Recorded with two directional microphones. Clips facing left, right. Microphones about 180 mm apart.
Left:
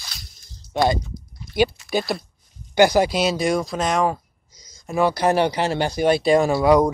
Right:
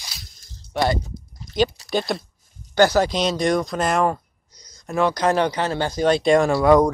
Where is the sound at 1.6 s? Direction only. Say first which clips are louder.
Left 1 dB; 10° left (ahead or behind).